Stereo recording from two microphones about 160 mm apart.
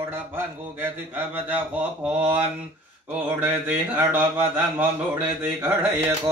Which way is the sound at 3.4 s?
10° right (ahead or behind).